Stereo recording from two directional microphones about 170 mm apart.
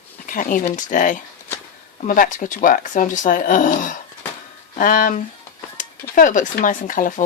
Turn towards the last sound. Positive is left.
turn(degrees=50)  # may be behind; listen again after turning